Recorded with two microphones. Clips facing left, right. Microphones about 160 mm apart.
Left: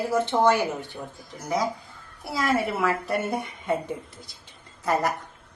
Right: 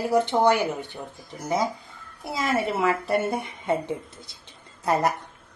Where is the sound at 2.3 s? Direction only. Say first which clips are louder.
Even; 20° right (ahead or behind).